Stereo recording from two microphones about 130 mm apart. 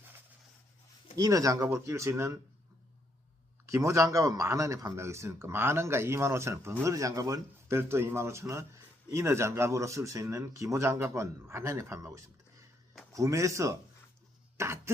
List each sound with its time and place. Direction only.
1.1 s speech: 25° right (ahead or behind)
3.7 s speech: 25° right (ahead or behind)